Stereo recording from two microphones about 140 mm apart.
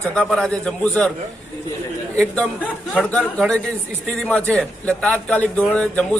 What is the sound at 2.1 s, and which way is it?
A man's voice, 5° left (ahead or behind).